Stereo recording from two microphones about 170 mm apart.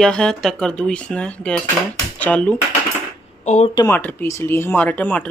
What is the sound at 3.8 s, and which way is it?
Speech, 10° left (ahead or behind).